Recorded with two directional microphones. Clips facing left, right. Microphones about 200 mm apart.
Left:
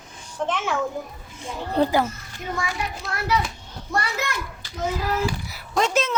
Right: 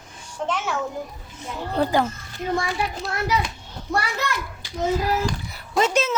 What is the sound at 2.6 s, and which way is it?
Speech, 35° right (ahead or behind).